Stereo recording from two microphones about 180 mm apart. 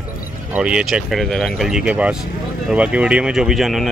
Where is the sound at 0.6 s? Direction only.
5° right (ahead or behind).